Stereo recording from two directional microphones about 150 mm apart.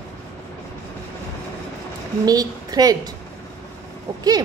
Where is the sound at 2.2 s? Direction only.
25° right (ahead or behind).